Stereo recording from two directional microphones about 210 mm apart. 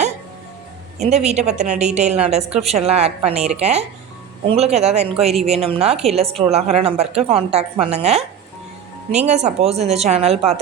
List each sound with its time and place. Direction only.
0.9 s a woman's voice: 30° right (ahead or behind)